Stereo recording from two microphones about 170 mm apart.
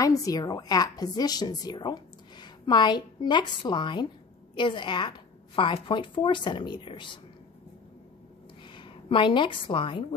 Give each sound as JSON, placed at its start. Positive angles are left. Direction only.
{"t": 0.0, "sound": "a woman's voice", "side_deg": 20}
{"t": 8.6, "sound": "a woman's voice", "side_deg": 30}